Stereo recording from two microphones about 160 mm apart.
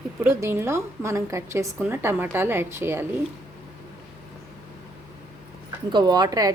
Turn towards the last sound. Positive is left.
turn(degrees=-25)  # may be behind; listen again after turning